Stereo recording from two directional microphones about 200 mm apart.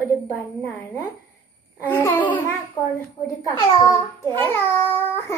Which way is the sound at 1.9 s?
10° left (ahead or behind).